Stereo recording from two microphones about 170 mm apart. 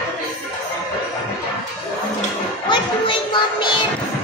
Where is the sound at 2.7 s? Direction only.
25° left (ahead or behind).